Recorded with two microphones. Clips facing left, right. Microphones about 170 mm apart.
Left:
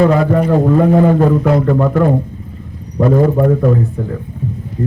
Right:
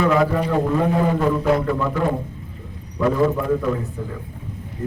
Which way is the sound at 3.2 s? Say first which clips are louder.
Left 8 dB; 45° left (ahead or behind).